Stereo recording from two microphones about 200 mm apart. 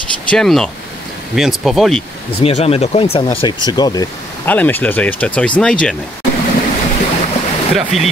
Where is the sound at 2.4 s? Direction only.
30° left (ahead or behind).